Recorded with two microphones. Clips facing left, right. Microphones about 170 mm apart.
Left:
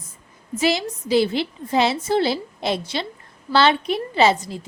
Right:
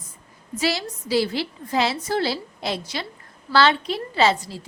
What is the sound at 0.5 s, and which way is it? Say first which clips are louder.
A woman's voice: left 4 dB; 20° left (ahead or behind).